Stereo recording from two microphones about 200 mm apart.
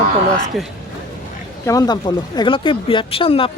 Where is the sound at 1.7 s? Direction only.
20° left (ahead or behind).